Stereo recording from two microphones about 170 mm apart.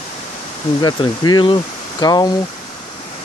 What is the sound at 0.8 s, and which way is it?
Speech, 25° left (ahead or behind).